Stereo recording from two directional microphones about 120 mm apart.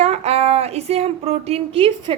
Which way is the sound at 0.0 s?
65° right (ahead or behind).